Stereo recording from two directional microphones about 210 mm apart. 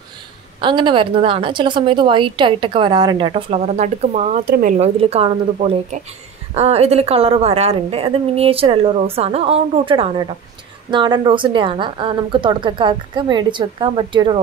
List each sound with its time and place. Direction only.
0.6 s a woman's voice: 20° right (ahead or behind); by 4.7 s 40° right (ahead or behind)
4.7 s a woman's voice: 30° right (ahead or behind)